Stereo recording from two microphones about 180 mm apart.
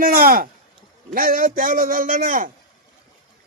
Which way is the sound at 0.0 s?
50° right (ahead or behind).